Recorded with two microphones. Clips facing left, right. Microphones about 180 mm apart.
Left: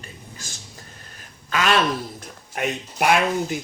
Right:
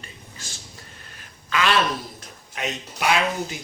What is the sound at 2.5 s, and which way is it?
Speech, 55° left (ahead or behind).